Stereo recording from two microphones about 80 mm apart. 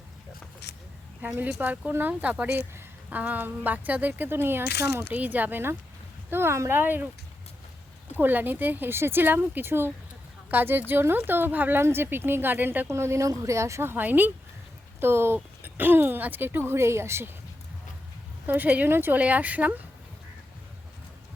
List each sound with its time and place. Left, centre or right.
1.2 s a woman's voice: right
5.0 s a woman's voice: centre
8.1 s a woman's voice: right
12.9 s speech: right
13.9 s a woman's voice: right
18.4 s a woman's voice: right